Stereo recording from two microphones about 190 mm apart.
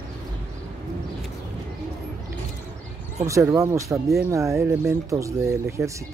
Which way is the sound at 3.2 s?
15° right (ahead or behind).